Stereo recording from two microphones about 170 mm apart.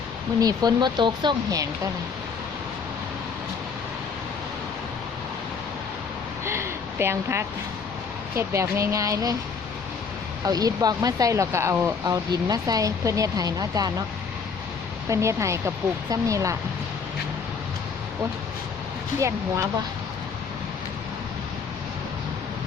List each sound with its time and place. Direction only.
0.3 s speech: 25° right (ahead or behind)
6.4 s a sound: 15° right (ahead or behind)
8.4 s speech: 15° right (ahead or behind)
10.4 s speech: 20° right (ahead or behind)
15.1 s speech: 15° right (ahead or behind)